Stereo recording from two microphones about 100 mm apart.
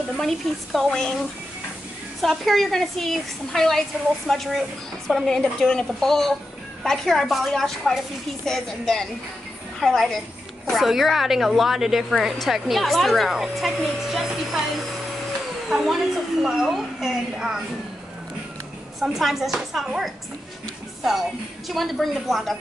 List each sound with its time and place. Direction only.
0.2 s a woman's voice: centre (ahead or behind)
2.2 s a woman's voice: centre (ahead or behind)
15.7 s a woman's voice: centre (ahead or behind)
18.9 s a woman's voice: 5° right (ahead or behind)